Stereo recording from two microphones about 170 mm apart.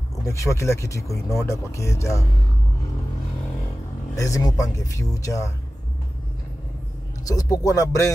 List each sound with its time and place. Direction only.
0.2 s speech: 20° left (ahead or behind)
4.1 s speech: 20° left (ahead or behind)
7.2 s speech: 20° left (ahead or behind)